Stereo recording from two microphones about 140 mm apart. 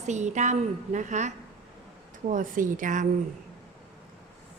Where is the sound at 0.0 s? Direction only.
55° right (ahead or behind).